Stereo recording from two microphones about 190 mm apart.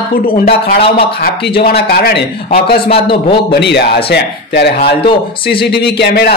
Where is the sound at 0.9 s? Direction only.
55° left (ahead or behind).